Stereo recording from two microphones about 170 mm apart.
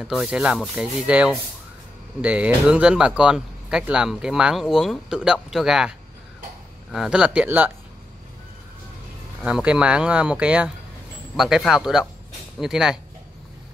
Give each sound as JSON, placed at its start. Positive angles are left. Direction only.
{"t": 0.0, "sound": "speech", "side_deg": -5}
{"t": 9.4, "sound": "speech", "side_deg": -5}